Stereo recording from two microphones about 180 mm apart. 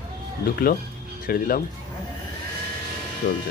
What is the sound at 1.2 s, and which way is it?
Speech, 55° left (ahead or behind).